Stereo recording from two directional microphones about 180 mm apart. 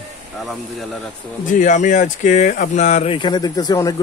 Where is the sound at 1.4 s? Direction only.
45° left (ahead or behind).